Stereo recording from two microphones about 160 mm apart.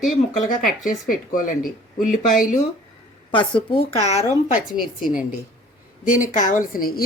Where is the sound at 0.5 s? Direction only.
60° left (ahead or behind).